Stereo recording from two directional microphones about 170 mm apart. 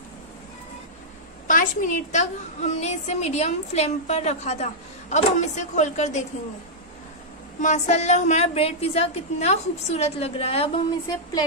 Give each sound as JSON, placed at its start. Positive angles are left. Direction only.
{"t": 1.5, "sound": "a woman's voice", "side_deg": 50}
{"t": 7.6, "sound": "a woman's voice", "side_deg": 40}